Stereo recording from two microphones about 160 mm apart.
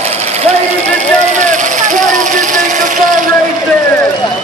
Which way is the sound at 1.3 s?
50° right (ahead or behind).